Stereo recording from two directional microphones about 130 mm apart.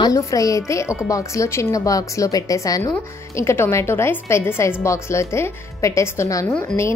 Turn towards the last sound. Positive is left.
turn(degrees=25)  # may be behind; listen again after turning